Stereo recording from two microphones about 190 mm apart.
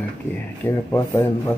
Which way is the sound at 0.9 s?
20° left (ahead or behind).